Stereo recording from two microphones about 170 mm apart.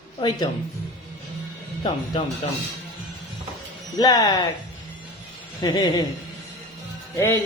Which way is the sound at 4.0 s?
20° left (ahead or behind).